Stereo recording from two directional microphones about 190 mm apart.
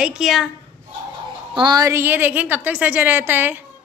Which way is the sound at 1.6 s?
20° right (ahead or behind).